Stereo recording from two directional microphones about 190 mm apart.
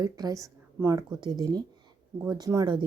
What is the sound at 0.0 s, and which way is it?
Speech, 20° right (ahead or behind).